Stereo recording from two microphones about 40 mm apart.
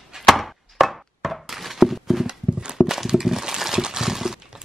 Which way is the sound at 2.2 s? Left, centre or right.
Right.